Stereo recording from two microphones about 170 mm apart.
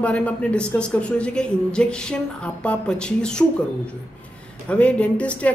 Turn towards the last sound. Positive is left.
turn(degrees=10)  # may be behind; listen again after turning